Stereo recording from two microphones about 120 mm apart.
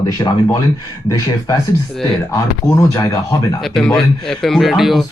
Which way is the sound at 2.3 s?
25° left (ahead or behind).